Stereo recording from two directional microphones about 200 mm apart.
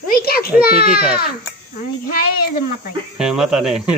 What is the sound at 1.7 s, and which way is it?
Speech, 45° left (ahead or behind).